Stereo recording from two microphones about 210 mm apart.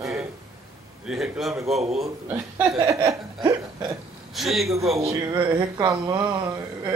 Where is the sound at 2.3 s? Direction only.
15° right (ahead or behind).